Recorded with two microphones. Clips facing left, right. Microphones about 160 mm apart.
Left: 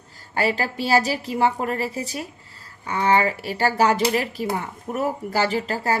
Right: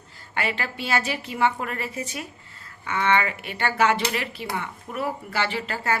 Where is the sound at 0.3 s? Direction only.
35° left (ahead or behind).